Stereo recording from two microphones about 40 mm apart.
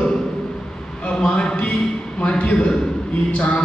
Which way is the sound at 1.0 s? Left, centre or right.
Left.